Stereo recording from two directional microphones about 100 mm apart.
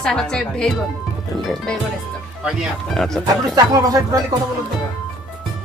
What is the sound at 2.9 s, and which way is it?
Speech, 5° left (ahead or behind).